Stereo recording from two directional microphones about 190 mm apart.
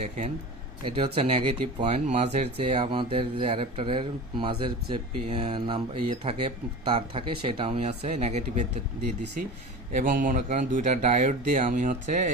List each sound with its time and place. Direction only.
0.9 s speech: 30° right (ahead or behind)
9.9 s speech: 45° right (ahead or behind)